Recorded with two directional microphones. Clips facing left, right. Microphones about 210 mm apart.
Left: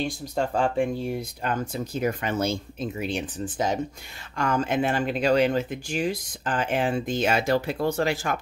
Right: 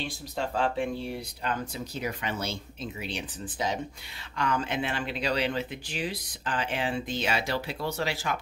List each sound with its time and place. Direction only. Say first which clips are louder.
0.0 s speech: left 6 dB; 45° left (ahead or behind)